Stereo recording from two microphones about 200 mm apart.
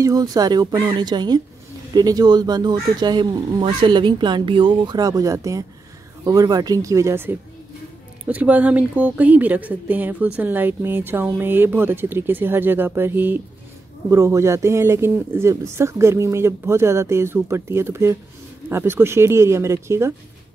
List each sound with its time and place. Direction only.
0.0 s speech: 20° right (ahead or behind)